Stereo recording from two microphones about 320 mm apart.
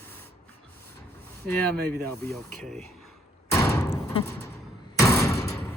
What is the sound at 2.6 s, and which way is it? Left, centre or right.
Slam, centre.